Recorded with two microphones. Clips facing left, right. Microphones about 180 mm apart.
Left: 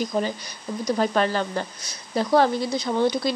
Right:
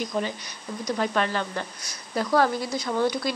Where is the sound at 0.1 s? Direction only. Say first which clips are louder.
Left 3 dB; 40° left (ahead or behind).